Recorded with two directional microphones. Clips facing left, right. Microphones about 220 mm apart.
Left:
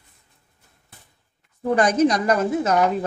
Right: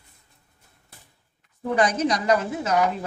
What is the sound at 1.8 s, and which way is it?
A woman's voice, 50° left (ahead or behind).